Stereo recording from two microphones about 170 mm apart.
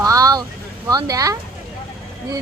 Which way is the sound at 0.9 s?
20° right (ahead or behind).